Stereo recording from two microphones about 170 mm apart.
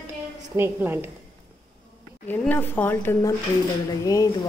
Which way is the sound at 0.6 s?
10° right (ahead or behind).